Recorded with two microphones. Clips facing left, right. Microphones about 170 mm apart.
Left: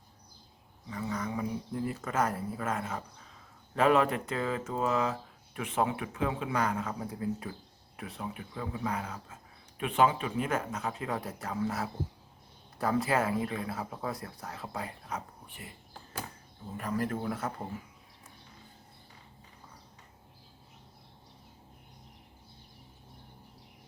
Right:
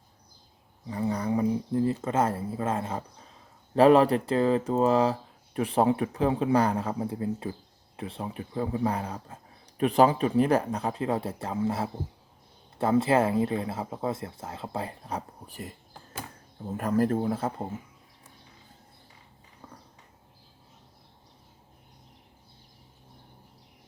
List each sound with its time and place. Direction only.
0.9 s speech: 35° right (ahead or behind)
16.7 s speech: 45° right (ahead or behind)
17.2 s speech: 30° right (ahead or behind)